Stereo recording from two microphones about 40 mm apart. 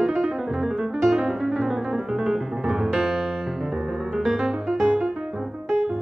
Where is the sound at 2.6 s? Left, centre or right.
Centre.